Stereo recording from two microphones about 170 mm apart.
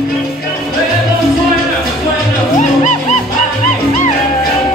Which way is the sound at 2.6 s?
45° left (ahead or behind).